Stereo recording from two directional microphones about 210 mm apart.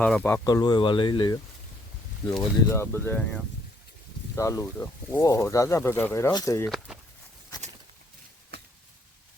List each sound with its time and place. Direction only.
0.0 s speech: 5° left (ahead or behind)
0.4 s speech: 20° left (ahead or behind)
6.7 s a sound: 5° right (ahead or behind)